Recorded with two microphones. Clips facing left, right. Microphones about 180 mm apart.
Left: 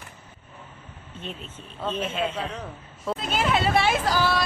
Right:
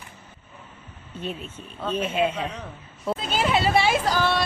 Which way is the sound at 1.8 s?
10° right (ahead or behind).